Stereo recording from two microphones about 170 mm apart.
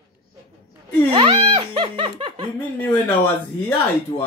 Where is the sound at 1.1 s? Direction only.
35° right (ahead or behind).